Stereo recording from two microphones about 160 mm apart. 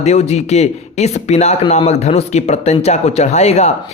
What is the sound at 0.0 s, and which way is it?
Speech, 45° left (ahead or behind).